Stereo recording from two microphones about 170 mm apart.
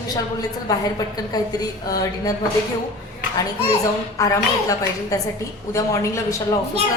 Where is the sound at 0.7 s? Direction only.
20° left (ahead or behind).